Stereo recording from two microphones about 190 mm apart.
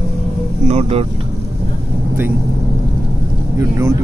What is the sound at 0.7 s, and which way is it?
Vehicle, 30° right (ahead or behind).